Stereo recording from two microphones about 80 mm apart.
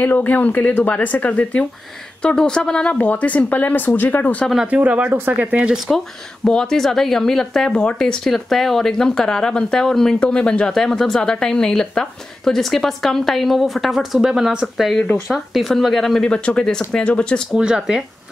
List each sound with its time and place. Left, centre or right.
0.0 s speech: left
4.6 s speech: centre
6.4 s speech: centre
17.6 s speech: centre